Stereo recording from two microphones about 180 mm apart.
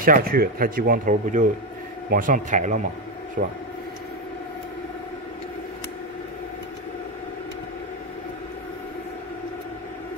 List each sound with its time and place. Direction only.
0.0 s speech: 55° right (ahead or behind)